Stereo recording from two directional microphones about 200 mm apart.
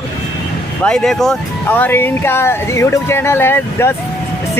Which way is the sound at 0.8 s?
5° left (ahead or behind).